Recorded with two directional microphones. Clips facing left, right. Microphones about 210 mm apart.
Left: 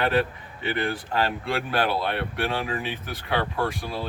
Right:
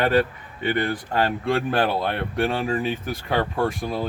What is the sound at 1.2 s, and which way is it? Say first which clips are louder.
Speech: right 5 dB; 45° right (ahead or behind).